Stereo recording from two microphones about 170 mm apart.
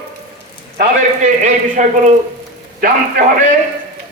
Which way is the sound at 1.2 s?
45° right (ahead or behind).